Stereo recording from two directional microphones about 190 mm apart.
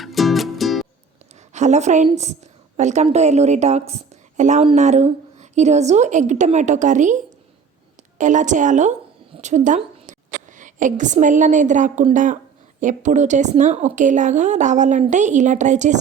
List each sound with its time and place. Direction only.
0.0 s music: centre (ahead or behind)
1.5 s a woman's voice: 40° right (ahead or behind)
8.2 s a woman's voice: 40° right (ahead or behind)